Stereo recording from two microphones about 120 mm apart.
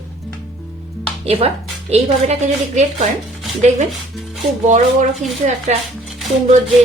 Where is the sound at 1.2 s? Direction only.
60° right (ahead or behind).